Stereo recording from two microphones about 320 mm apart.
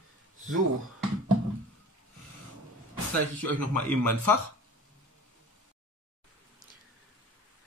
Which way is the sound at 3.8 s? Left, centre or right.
Right.